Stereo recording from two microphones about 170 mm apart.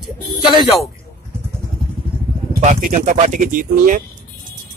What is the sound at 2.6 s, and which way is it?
Speech, 50° right (ahead or behind).